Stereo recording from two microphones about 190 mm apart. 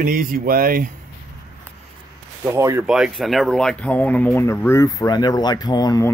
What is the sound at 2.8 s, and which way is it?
Speech, 5° right (ahead or behind).